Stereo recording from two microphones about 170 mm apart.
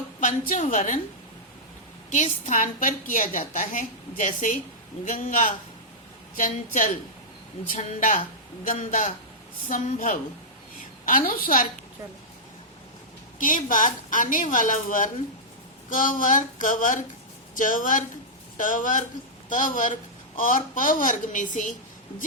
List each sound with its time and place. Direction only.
0.2 s a woman's voice: 50° left (ahead or behind)
2.0 s a woman's voice: 45° left (ahead or behind)
13.4 s a woman's voice: 50° left (ahead or behind)